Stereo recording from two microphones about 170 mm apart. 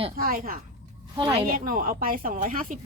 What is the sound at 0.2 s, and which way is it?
Speech, 60° right (ahead or behind).